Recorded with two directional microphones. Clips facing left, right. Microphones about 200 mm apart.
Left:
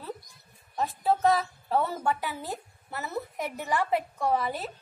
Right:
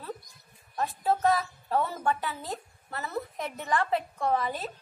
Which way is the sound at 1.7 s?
10° left (ahead or behind).